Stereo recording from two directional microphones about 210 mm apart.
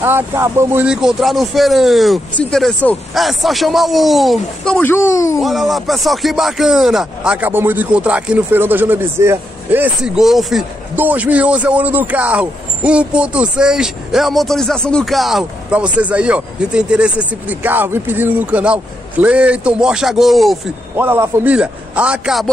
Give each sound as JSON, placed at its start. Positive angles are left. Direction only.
{"t": 0.0, "sound": "speech", "side_deg": -10}
{"t": 5.4, "sound": "speech", "side_deg": 0}